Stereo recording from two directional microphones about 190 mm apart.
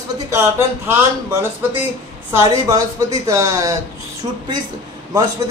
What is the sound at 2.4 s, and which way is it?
Speech, 20° right (ahead or behind).